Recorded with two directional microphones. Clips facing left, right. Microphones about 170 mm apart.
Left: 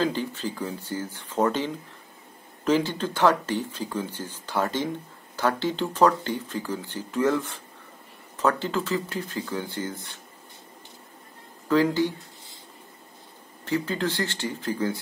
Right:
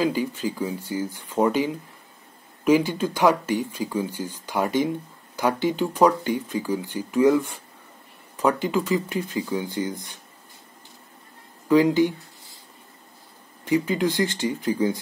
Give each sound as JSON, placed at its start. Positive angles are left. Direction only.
{"t": 0.0, "sound": "speech", "side_deg": -10}
{"t": 11.6, "sound": "speech", "side_deg": -15}
{"t": 13.7, "sound": "speech", "side_deg": -15}